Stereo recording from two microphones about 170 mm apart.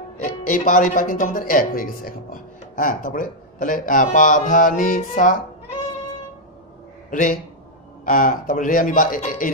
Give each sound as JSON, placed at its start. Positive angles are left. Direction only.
{"t": 0.2, "sound": "speech", "side_deg": 50}
{"t": 7.1, "sound": "a man's voice", "side_deg": 50}